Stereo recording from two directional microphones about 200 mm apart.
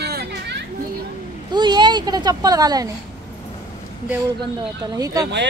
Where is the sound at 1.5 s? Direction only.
20° right (ahead or behind).